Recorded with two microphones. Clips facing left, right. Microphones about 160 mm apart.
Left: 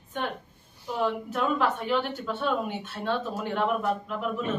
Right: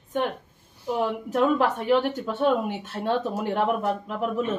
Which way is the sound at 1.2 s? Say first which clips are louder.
Right 5 dB; 20° right (ahead or behind).